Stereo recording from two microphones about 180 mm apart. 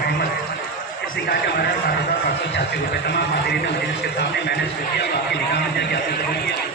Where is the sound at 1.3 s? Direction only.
65° left (ahead or behind).